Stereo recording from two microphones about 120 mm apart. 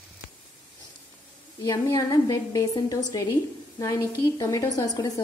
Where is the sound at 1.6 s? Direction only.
30° left (ahead or behind).